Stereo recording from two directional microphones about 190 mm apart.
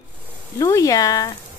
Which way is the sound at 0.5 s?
15° left (ahead or behind).